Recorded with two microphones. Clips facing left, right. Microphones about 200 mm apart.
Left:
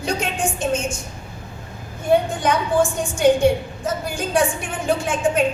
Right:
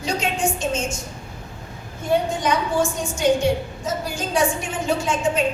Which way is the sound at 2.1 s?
55° left (ahead or behind).